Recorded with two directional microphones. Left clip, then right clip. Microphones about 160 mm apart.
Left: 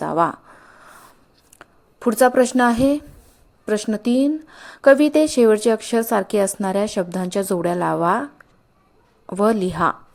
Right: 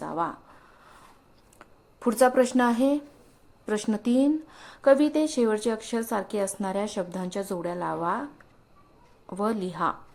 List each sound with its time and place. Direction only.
0.0 s a sound: 40° left (ahead or behind)
1.5 s a woman's voice: 25° left (ahead or behind)
9.3 s a woman's voice: 35° left (ahead or behind)